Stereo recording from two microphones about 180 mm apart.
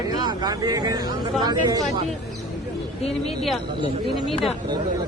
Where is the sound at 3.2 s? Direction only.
Centre (ahead or behind).